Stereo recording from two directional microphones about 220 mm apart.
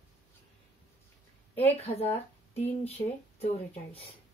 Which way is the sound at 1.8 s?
30° left (ahead or behind).